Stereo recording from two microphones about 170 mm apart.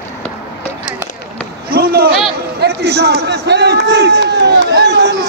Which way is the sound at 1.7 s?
65° right (ahead or behind).